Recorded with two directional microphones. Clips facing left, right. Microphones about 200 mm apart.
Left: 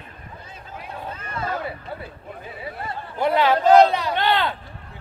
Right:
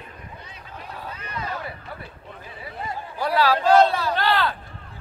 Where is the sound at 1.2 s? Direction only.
50° left (ahead or behind).